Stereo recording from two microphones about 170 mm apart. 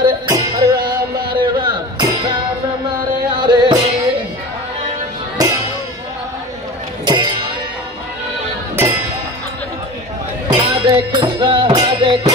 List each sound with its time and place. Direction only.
0.0 s music: 25° right (ahead or behind)
1.4 s a sound: 25° right (ahead or behind)
3.4 s music: 25° right (ahead or behind)
5.4 s music: 20° right (ahead or behind)
7.1 s music: 25° right (ahead or behind)
10.5 s music: 30° right (ahead or behind)